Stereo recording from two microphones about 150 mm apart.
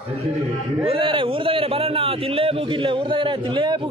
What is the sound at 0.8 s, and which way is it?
A man's voice, 35° right (ahead or behind).